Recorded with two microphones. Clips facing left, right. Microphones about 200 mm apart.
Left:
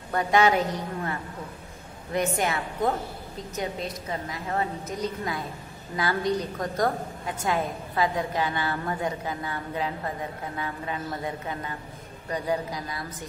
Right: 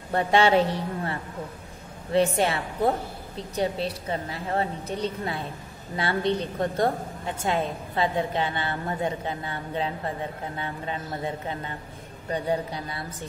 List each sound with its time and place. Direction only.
0.1 s a woman's voice: 30° right (ahead or behind)
2.1 s a woman's voice: 30° right (ahead or behind)